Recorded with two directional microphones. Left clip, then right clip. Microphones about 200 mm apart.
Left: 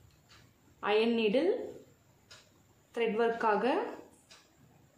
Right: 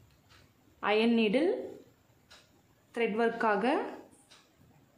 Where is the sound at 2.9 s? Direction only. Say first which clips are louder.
Even; 35° right (ahead or behind).